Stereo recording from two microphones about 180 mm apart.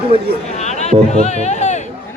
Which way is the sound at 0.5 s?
40° left (ahead or behind).